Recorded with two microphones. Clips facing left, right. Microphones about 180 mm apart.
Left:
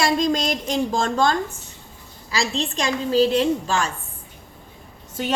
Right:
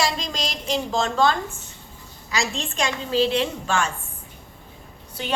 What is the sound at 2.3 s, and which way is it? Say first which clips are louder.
A woman's voice: left 3 dB; 35° left (ahead or behind).